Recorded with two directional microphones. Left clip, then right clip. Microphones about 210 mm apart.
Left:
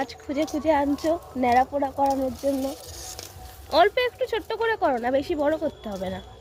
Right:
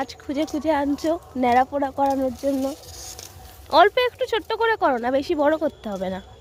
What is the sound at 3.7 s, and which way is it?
Speech, 30° right (ahead or behind).